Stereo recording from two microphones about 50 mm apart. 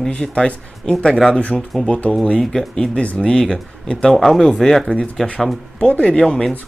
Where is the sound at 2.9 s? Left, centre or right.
Left.